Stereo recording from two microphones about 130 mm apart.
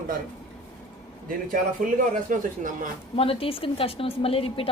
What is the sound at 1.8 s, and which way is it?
Speech, 90° right.